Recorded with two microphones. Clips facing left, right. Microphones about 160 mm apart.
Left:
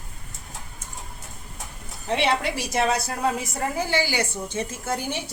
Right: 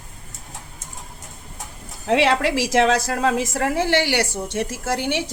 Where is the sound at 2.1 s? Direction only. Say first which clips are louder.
Right 5 dB; 90° right.